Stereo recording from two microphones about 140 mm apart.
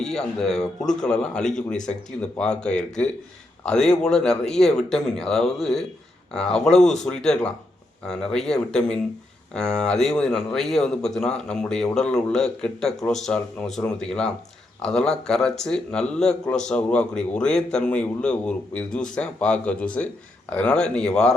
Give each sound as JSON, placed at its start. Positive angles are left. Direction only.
{"t": 0.0, "sound": "a man's voice", "side_deg": 5}